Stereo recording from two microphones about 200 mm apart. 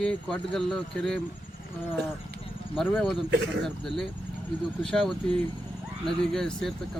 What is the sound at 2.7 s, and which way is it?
Speech, centre (ahead or behind).